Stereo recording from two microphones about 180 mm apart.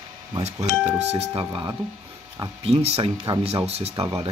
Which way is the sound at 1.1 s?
30° right (ahead or behind).